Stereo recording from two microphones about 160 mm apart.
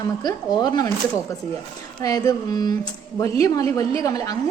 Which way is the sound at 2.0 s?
20° left (ahead or behind).